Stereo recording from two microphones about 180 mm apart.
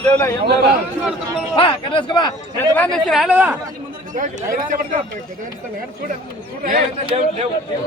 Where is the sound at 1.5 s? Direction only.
30° left (ahead or behind).